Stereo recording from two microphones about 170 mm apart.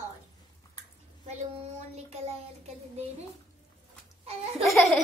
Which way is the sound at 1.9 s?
35° right (ahead or behind).